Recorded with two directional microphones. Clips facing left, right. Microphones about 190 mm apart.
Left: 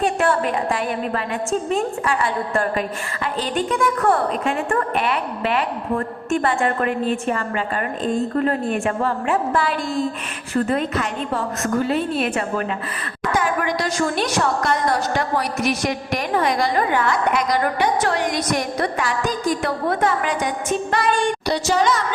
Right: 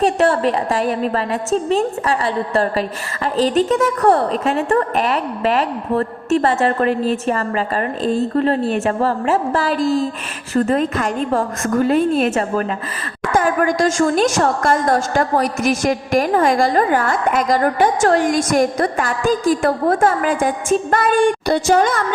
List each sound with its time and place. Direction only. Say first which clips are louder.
0.0 s a woman's voice: right 4 dB; 40° right (ahead or behind)